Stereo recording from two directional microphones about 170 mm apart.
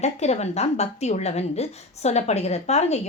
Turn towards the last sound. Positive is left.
turn(degrees=40)  # may be behind; listen again after turning